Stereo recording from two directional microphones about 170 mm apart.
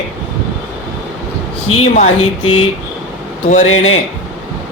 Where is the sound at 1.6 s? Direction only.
35° left (ahead or behind).